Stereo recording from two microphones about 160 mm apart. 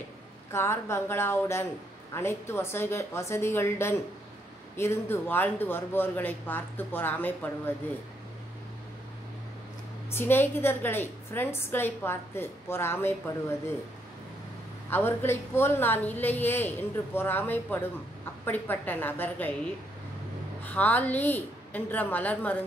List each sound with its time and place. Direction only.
0.5 s a woman's voice: 15° left (ahead or behind)
10.1 s a woman's voice: 15° left (ahead or behind)
14.9 s a woman's voice: 15° left (ahead or behind)
20.6 s a woman's voice: 10° left (ahead or behind)